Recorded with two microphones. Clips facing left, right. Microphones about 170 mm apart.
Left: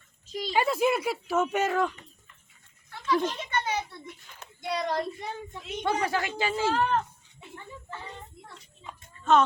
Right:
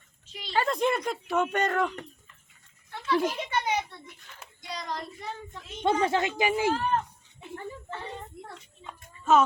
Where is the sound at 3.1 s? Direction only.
10° right (ahead or behind).